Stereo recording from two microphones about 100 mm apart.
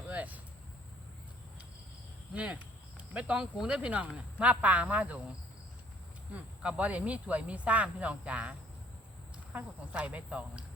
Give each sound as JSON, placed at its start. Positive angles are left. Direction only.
{"t": 0.1, "sound": "a sound", "side_deg": -15}
{"t": 2.3, "sound": "speech", "side_deg": -15}
{"t": 6.3, "sound": "speech", "side_deg": -10}